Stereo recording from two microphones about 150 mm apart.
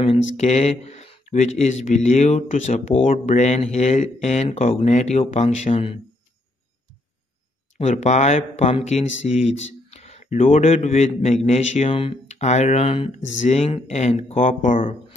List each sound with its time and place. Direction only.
0.0 s speech: 45° left (ahead or behind)
7.7 s speech: 50° left (ahead or behind)
11.9 s speech: 35° left (ahead or behind)
12.3 s speech: 50° left (ahead or behind)